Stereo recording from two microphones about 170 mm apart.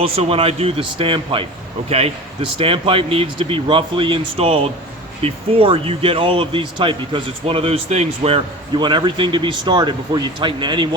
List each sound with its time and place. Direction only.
0.0 s speech: 35° right (ahead or behind)